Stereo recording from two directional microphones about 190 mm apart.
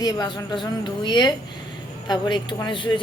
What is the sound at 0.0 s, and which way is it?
A woman's voice, 20° left (ahead or behind).